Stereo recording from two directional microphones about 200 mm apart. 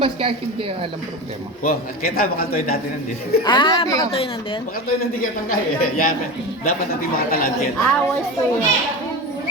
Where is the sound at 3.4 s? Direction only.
20° left (ahead or behind).